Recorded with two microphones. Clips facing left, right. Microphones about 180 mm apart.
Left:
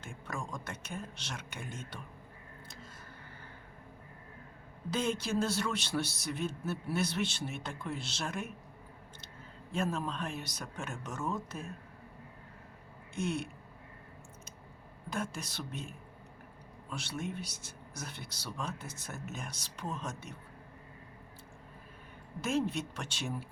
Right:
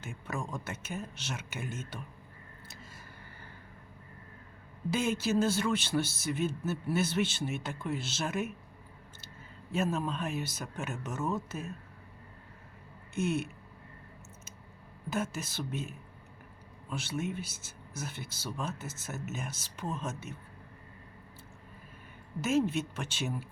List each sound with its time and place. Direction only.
0.0 s a man's voice: 5° right (ahead or behind)
4.9 s a man's voice: 10° right (ahead or behind)
9.7 s a man's voice: 5° right (ahead or behind)
13.1 s a man's voice: 5° right (ahead or behind)
15.1 s a man's voice: 5° right (ahead or behind)
22.4 s a man's voice: 5° right (ahead or behind)